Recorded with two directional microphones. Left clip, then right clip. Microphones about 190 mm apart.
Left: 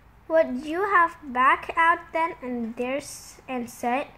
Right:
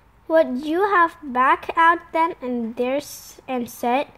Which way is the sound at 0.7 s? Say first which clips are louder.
Right 3 dB; 40° right (ahead or behind).